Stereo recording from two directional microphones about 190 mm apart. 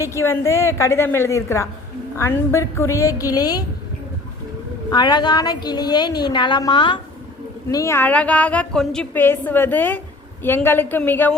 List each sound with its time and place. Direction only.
0.0 s a woman's voice: 15° left (ahead or behind)
4.9 s a woman's voice: 25° left (ahead or behind)